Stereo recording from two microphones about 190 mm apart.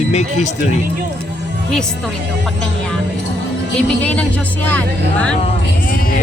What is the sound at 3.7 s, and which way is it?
Speech, 5° left (ahead or behind).